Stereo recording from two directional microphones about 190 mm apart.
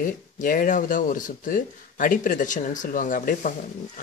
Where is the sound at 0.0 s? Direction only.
45° left (ahead or behind).